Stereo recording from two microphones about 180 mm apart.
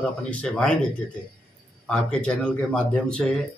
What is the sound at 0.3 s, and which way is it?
Speech, 5° left (ahead or behind).